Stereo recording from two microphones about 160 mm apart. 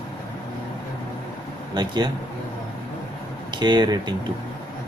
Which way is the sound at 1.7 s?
25° right (ahead or behind).